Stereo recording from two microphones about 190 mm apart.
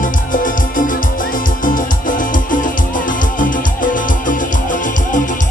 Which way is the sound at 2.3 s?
45° left (ahead or behind).